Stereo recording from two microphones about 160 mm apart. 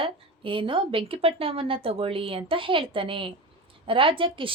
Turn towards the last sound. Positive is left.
turn(degrees=-35)  # may be behind; listen again after turning